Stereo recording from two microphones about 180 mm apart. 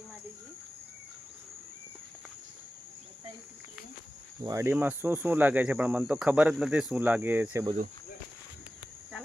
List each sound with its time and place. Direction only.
4.4 s speech: 15° right (ahead or behind)